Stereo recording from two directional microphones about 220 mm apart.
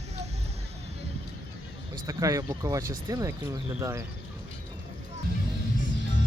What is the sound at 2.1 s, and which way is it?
Speech, 15° right (ahead or behind).